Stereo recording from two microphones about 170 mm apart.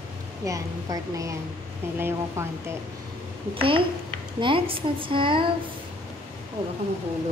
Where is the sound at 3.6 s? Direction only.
30° right (ahead or behind).